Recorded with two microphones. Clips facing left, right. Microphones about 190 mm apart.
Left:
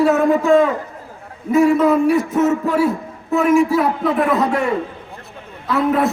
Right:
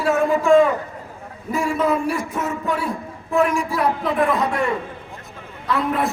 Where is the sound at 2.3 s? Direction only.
20° left (ahead or behind).